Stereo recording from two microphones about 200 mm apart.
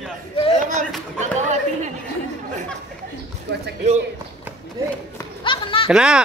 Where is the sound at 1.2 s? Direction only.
35° right (ahead or behind).